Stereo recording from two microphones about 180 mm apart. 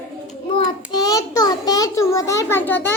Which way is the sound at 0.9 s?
20° left (ahead or behind).